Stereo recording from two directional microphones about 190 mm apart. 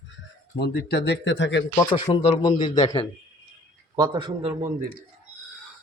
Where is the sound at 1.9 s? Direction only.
25° left (ahead or behind).